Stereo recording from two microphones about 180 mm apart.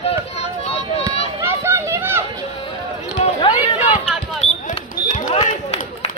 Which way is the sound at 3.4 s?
30° left (ahead or behind).